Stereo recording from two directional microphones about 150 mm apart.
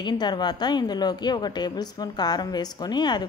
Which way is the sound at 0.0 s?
30° left (ahead or behind).